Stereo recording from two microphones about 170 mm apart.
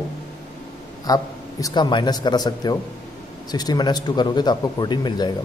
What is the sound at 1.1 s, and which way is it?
Speech, 20° left (ahead or behind).